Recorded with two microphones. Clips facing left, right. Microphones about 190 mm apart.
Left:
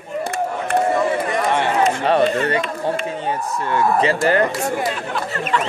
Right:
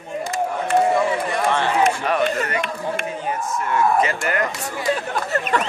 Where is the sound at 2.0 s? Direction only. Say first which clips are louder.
Left 4 dB; 30° left (ahead or behind).